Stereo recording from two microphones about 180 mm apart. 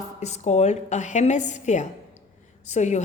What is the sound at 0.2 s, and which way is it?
A woman's voice, 40° left (ahead or behind).